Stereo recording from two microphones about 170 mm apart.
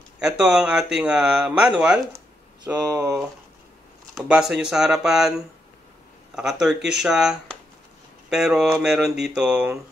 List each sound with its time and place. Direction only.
0.2 s speech: 5° right (ahead or behind)
2.1 s a sound: 10° right (ahead or behind)
2.9 s speech: 20° right (ahead or behind)
4.1 s speech: 5° right (ahead or behind)
6.3 s speech: 5° right (ahead or behind)